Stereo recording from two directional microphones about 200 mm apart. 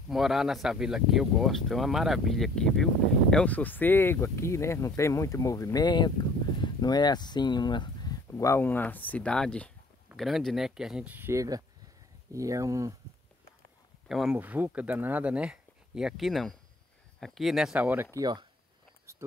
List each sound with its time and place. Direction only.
0.1 s speech: centre (ahead or behind)
14.0 s speech: centre (ahead or behind)
18.1 s speech: 20° right (ahead or behind)
19.1 s a sound: 15° right (ahead or behind)